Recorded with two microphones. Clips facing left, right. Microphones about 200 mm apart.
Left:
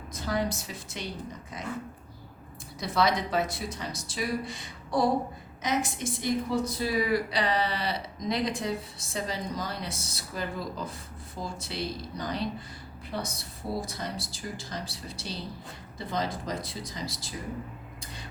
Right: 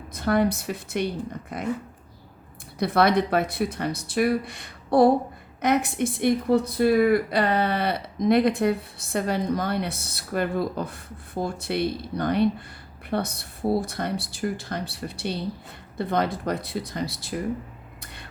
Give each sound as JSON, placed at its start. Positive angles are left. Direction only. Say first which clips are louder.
{"t": 0.1, "sound": "a woman's voice", "louder": "right 8 dB", "side_deg": -60}
{"t": 2.7, "sound": "a woman's voice", "louder": "right 6 dB", "side_deg": -60}
{"t": 18.0, "sound": "a sound", "louder": "even", "side_deg": -60}